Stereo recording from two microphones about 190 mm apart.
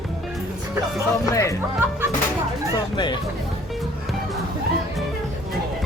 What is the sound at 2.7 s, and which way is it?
Speech, 20° left (ahead or behind).